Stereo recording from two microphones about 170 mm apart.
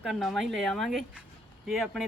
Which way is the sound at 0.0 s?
Centre (ahead or behind).